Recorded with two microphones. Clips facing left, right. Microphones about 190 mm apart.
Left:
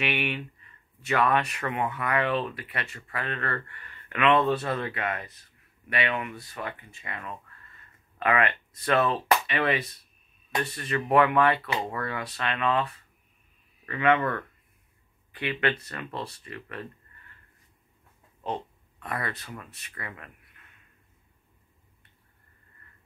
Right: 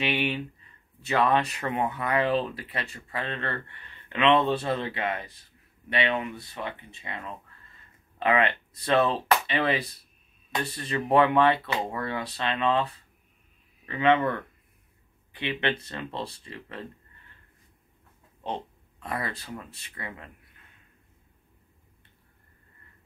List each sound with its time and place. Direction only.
0.0 s speech: 30° right (ahead or behind)
18.9 s speech: 25° right (ahead or behind)